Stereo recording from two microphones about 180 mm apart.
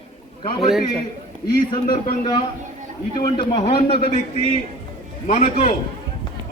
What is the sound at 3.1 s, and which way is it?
A man's voice, 25° left (ahead or behind).